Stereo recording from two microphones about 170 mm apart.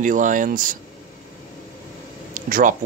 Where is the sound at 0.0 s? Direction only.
50° right (ahead or behind).